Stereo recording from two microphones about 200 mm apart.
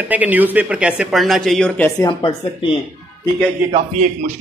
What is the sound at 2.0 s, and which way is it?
Speech, 25° left (ahead or behind).